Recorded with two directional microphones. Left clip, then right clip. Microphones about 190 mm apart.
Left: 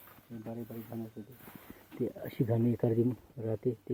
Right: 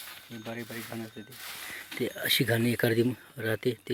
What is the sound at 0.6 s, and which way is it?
Speech, 45° right (ahead or behind).